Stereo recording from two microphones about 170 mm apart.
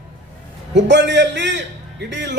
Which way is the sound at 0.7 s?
90° right.